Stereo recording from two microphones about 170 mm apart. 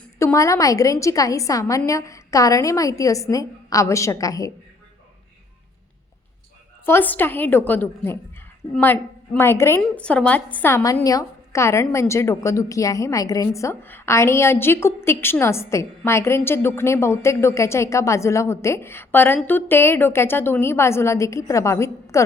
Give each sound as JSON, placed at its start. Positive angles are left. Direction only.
{"t": 0.2, "sound": "a woman's voice", "side_deg": 15}
{"t": 6.8, "sound": "a woman's voice", "side_deg": 10}